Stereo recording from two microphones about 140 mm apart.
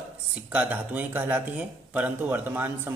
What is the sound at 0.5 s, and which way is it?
Speech, 10° right (ahead or behind).